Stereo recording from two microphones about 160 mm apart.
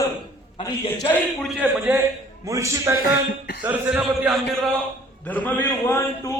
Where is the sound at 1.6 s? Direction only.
10° right (ahead or behind).